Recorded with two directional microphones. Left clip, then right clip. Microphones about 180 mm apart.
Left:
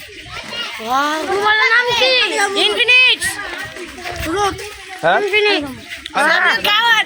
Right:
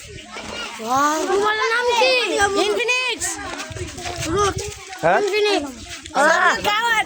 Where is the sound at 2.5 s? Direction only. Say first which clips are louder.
Left 8 dB; 30° right (ahead or behind).